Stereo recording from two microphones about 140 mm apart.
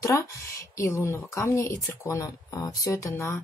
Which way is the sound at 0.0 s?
20° left (ahead or behind).